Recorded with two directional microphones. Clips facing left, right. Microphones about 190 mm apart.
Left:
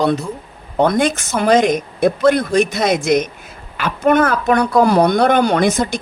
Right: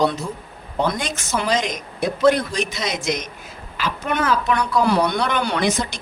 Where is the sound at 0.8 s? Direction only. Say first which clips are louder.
Left 8 dB; 55° left (ahead or behind).